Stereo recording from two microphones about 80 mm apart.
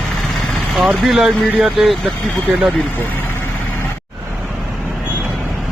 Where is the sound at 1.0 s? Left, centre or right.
Centre.